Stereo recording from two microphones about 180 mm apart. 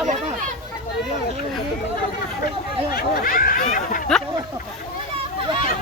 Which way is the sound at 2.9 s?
50° left (ahead or behind).